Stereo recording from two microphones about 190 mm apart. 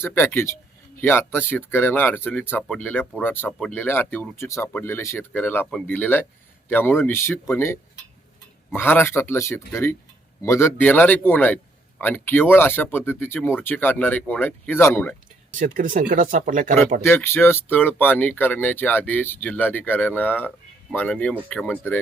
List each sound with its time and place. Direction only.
0.0 s speech: 10° left (ahead or behind)
15.5 s speech: 45° right (ahead or behind)
17.0 s speech: 10° left (ahead or behind)